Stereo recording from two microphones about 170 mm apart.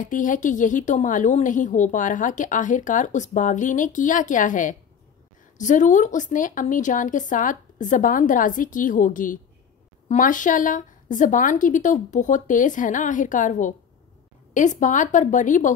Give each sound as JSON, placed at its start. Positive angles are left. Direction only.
{"t": 0.0, "sound": "a woman's voice", "side_deg": 50}